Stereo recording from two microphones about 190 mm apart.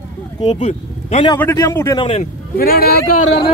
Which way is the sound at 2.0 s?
35° left (ahead or behind).